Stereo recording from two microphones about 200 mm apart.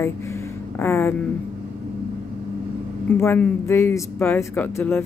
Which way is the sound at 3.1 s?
10° left (ahead or behind).